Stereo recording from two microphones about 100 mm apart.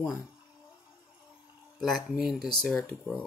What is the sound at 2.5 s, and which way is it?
Speech, 10° left (ahead or behind).